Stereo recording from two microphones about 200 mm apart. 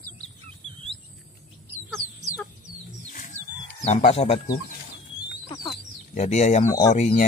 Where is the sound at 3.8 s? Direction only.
35° left (ahead or behind).